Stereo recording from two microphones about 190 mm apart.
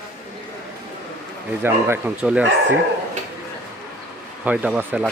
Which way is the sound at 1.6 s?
10° right (ahead or behind).